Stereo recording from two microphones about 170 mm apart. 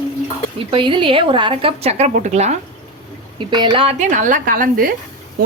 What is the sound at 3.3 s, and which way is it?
A woman's voice, 25° right (ahead or behind).